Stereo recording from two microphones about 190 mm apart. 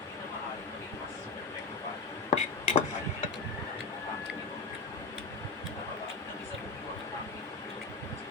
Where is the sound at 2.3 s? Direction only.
35° left (ahead or behind).